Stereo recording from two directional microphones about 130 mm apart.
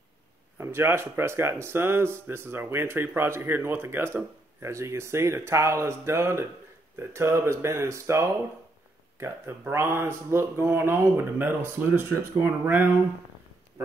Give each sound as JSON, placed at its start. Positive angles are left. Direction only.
{"t": 0.6, "sound": "speech", "side_deg": -20}